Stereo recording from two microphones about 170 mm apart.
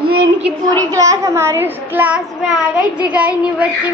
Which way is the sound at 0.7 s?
20° right (ahead or behind).